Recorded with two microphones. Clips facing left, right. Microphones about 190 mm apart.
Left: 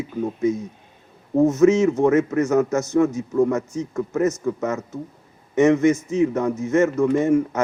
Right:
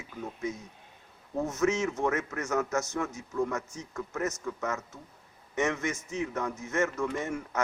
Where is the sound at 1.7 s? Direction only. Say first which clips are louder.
Left 12 dB; 20° left (ahead or behind).